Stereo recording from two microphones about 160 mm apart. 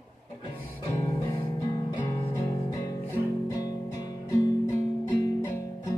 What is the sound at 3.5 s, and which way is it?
Music, 20° left (ahead or behind).